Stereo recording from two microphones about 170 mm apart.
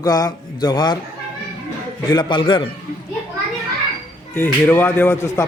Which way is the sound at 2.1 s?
25° left (ahead or behind).